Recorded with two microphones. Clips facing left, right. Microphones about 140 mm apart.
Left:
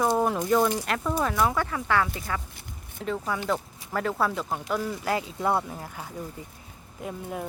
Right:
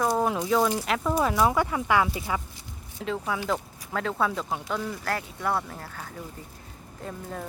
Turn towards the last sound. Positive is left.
turn(degrees=10)  # may be behind; listen again after turning